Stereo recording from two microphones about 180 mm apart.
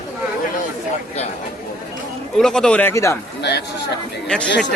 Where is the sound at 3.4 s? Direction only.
70° left (ahead or behind).